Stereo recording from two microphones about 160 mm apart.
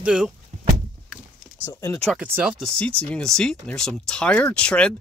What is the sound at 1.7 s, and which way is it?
Speech, 20° left (ahead or behind).